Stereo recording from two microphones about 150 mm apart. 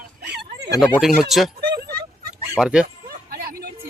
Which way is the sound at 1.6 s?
90° right.